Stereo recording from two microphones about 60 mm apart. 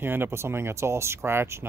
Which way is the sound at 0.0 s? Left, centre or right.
Right.